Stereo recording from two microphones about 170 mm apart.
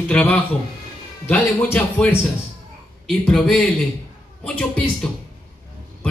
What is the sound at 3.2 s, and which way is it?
Speech, centre (ahead or behind).